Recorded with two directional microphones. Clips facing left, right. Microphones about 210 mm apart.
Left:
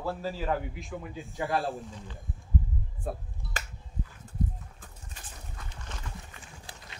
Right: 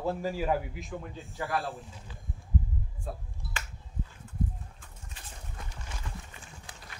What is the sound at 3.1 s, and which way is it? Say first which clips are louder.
Speech: left 5 dB; 55° left (ahead or behind).